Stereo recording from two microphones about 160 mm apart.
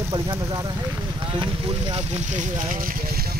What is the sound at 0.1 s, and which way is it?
Speech, 30° right (ahead or behind).